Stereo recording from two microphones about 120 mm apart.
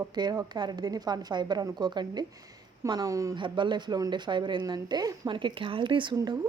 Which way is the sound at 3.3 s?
40° right (ahead or behind).